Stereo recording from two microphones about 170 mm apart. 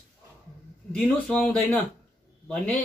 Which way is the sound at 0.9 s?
5° left (ahead or behind).